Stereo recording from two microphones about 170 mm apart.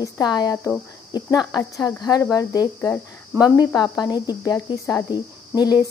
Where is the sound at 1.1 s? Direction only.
25° left (ahead or behind).